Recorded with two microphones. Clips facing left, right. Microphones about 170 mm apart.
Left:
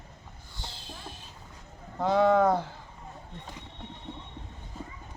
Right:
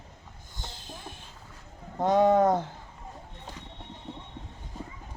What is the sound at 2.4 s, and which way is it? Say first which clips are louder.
Speech: right 1 dB; 20° right (ahead or behind).